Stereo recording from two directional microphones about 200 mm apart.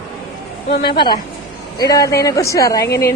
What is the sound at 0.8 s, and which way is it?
Speech, 25° left (ahead or behind).